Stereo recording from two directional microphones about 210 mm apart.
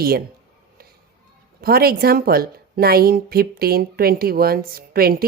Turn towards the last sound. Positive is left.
turn(degrees=-45)  # may be behind; listen again after turning